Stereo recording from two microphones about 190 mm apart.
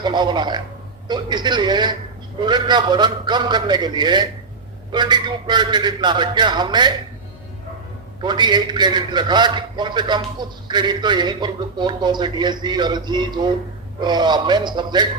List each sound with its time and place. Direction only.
0.0 s a man's voice: 25° right (ahead or behind)
8.2 s a man's voice: 25° right (ahead or behind)